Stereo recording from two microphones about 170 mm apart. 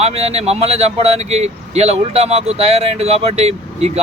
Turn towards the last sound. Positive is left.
turn(degrees=-40)  # may be behind; listen again after turning